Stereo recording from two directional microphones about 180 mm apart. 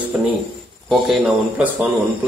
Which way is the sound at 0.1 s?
5° right (ahead or behind).